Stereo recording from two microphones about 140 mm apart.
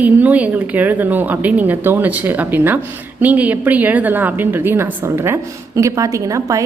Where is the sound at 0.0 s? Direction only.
10° right (ahead or behind).